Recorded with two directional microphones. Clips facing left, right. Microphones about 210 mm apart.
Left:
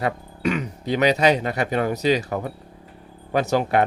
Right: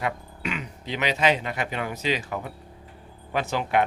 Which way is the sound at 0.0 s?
40° left (ahead or behind).